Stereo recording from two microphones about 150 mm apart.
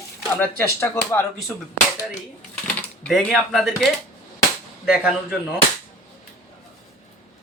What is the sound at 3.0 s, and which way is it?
Speech, centre (ahead or behind).